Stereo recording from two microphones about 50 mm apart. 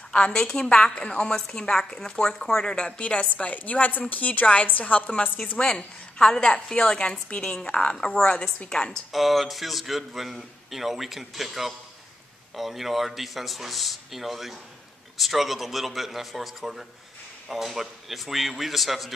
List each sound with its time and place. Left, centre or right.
0.1 s a woman's voice: centre
5.6 s a woman's voice: centre
9.1 s a man's voice: centre